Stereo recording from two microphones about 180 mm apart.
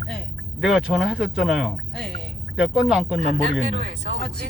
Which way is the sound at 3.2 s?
40° right (ahead or behind).